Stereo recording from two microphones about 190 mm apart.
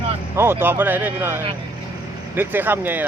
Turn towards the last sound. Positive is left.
turn(degrees=-10)  # may be behind; listen again after turning